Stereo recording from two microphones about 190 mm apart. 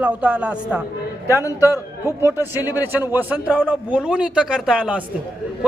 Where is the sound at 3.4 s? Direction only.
5° left (ahead or behind).